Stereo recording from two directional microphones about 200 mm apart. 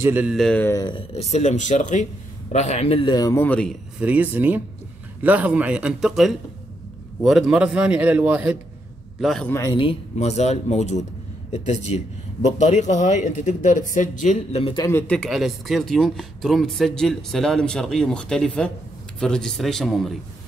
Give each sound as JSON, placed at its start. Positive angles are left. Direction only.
{"t": 0.0, "sound": "speech", "side_deg": -10}
{"t": 4.0, "sound": "speech", "side_deg": -5}
{"t": 9.5, "sound": "speech", "side_deg": 20}
{"t": 14.9, "sound": "speech", "side_deg": 10}